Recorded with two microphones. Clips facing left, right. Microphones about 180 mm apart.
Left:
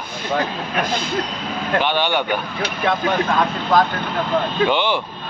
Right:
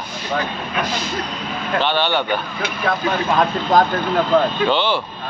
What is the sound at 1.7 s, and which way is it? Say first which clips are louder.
Speech: even; 15° left (ahead or behind).